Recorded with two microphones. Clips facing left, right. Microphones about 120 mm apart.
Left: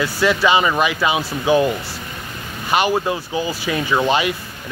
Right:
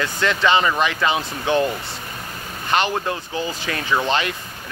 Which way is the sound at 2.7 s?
10° left (ahead or behind).